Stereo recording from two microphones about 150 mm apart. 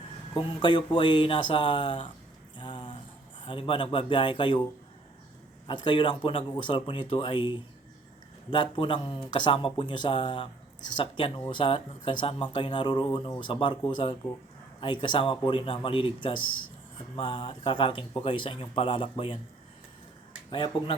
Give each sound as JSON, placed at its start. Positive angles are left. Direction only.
{"t": 0.3, "sound": "speech", "side_deg": 30}
{"t": 2.6, "sound": "a sound", "side_deg": 30}
{"t": 3.4, "sound": "speech", "side_deg": 35}
{"t": 5.6, "sound": "speech", "side_deg": 30}
{"t": 20.5, "sound": "speech", "side_deg": 35}